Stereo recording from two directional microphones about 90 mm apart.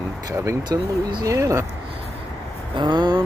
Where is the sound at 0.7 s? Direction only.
50° right (ahead or behind).